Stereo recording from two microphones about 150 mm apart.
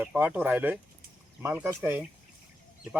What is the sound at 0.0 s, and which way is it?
Speech, 10° right (ahead or behind).